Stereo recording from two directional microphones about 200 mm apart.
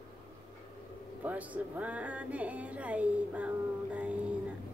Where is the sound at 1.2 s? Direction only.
5° right (ahead or behind).